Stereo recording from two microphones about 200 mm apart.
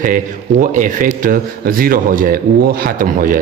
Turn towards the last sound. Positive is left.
turn(degrees=-40)  # may be behind; listen again after turning